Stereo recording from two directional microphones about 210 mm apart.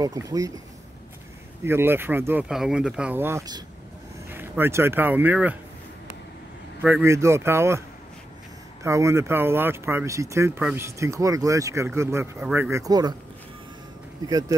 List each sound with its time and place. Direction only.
0.0 s speech: 15° right (ahead or behind)
1.6 s speech: 10° right (ahead or behind)
6.8 s speech: 10° right (ahead or behind)
8.8 s speech: 15° right (ahead or behind)